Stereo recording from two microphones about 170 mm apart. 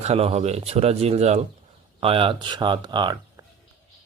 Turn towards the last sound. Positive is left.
turn(degrees=-25)  # may be behind; listen again after turning